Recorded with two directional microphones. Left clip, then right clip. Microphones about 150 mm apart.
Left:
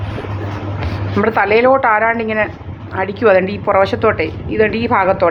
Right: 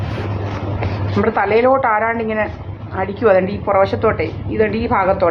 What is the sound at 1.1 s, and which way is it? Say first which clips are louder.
Speech: left 2 dB; 25° left (ahead or behind).